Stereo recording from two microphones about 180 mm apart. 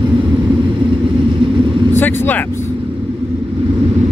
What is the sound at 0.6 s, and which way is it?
Vehicle, 30° right (ahead or behind).